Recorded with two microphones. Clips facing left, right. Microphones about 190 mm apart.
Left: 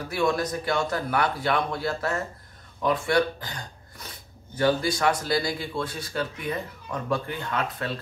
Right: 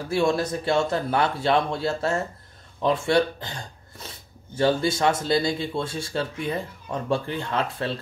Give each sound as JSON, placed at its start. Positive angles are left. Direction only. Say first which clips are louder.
{"t": 0.1, "sound": "speech", "louder": "right 3 dB", "side_deg": -25}